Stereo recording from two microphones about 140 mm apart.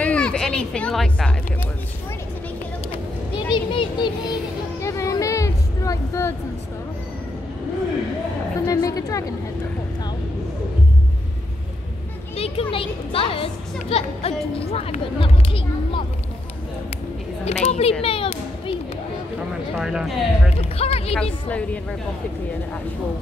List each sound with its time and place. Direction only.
0.0 s speech: 5° left (ahead or behind)
2.9 s vehicle: 35° left (ahead or behind)
4.8 s a sound: 20° left (ahead or behind)
8.5 s a woman's voice: 25° left (ahead or behind)
12.4 s a child's voice: 45° left (ahead or behind)
17.5 s a child's voice: 50° left (ahead or behind)
18.0 s children playing: 40° left (ahead or behind)
19.8 s speech: 5° right (ahead or behind)
20.7 s a child's voice: 45° left (ahead or behind)
21.1 s a woman's voice: 5° left (ahead or behind)